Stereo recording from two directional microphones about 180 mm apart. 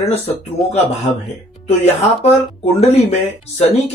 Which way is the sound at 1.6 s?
35° left (ahead or behind).